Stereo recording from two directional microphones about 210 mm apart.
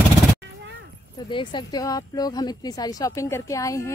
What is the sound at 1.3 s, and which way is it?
A woman's voice, 20° left (ahead or behind).